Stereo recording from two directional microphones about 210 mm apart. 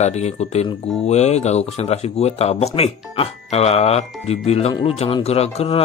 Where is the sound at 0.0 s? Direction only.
30° left (ahead or behind).